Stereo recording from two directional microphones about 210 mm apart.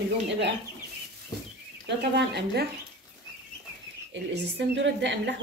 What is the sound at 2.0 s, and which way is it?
Speech, 50° right (ahead or behind).